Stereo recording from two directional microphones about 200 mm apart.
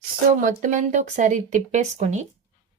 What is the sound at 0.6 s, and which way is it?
Speech, 35° right (ahead or behind).